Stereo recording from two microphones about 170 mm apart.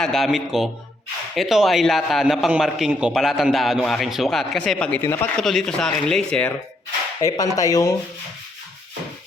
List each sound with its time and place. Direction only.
0.0 s a man's voice: centre (ahead or behind)
7.2 s speech: 20° left (ahead or behind)